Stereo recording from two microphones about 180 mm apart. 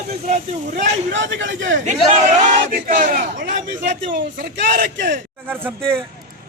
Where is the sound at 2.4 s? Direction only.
50° right (ahead or behind).